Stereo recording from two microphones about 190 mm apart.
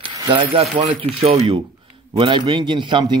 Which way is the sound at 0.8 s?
35° right (ahead or behind).